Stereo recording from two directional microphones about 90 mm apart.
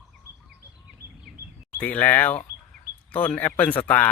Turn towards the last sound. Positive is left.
turn(degrees=20)  # may be behind; listen again after turning